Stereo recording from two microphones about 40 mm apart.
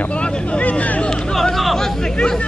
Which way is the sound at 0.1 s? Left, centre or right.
Left.